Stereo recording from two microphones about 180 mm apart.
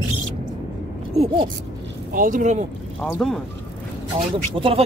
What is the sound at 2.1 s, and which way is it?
Speech, 50° right (ahead or behind).